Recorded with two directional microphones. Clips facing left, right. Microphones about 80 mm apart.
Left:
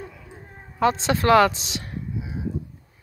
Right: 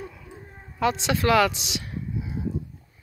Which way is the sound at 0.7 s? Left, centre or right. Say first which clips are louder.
Left 3 dB; left.